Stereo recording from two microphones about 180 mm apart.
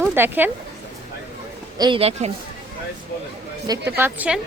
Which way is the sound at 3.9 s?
10° right (ahead or behind).